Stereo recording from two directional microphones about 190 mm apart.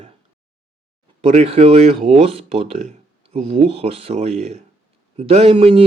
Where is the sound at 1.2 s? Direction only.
35° right (ahead or behind).